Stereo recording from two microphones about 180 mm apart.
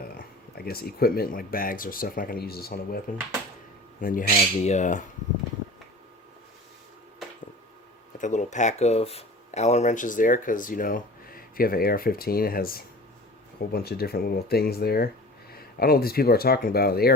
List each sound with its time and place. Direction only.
0.1 s speech: 60° left (ahead or behind)
4.0 s speech: 50° left (ahead or behind)
8.2 s speech: 45° left (ahead or behind)